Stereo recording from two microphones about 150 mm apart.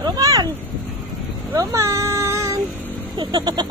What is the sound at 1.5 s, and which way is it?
Cat, 20° right (ahead or behind).